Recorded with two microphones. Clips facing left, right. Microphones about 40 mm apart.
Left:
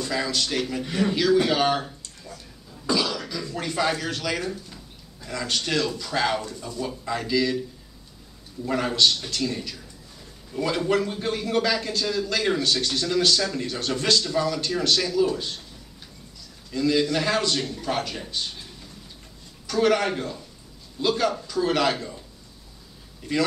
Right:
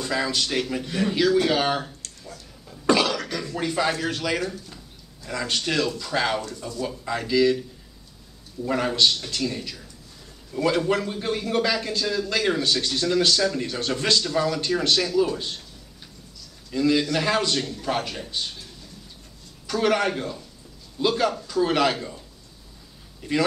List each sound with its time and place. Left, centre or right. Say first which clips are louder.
0.0 s a man's voice: right 1 dB; centre
1.9 s a sound: even; centre
2.9 s cough: right 4 dB; right
3.5 s a man's voice: right 1 dB; centre
8.6 s a man's voice: even; centre
13.8 s a man's voice: left 1 dB; centre
16.7 s a man's voice: right 1 dB; centre
17.6 s speech: right 1 dB; centre
19.7 s a man's voice: left 1 dB; centre